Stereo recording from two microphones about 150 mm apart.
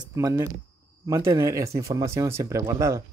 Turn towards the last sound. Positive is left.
turn(degrees=-20)  # may be behind; listen again after turning